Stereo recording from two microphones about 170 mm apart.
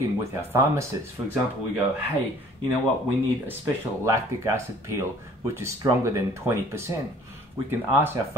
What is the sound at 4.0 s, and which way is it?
Speech, 15° right (ahead or behind).